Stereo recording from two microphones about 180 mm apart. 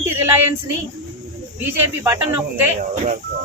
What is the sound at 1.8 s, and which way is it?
Speech, 10° right (ahead or behind).